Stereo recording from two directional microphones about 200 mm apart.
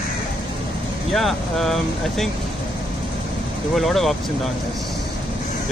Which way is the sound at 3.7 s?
Centre (ahead or behind).